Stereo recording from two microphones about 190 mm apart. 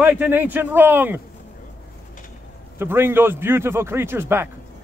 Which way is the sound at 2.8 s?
10° right (ahead or behind).